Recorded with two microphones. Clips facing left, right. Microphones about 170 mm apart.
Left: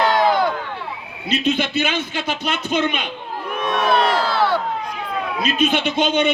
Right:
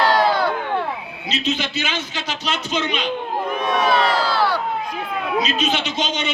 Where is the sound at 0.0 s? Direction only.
20° left (ahead or behind).